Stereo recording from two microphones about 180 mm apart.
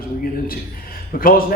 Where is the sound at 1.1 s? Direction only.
55° left (ahead or behind).